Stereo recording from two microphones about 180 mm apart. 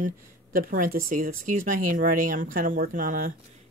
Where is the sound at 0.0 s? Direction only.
50° right (ahead or behind).